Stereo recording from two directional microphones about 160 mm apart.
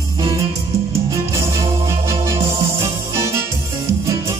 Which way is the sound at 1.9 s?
20° right (ahead or behind).